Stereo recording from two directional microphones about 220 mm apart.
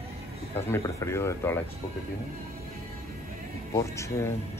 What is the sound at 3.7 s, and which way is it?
Speech, 15° left (ahead or behind).